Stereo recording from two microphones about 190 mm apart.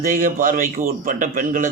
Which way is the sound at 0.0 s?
45° right (ahead or behind).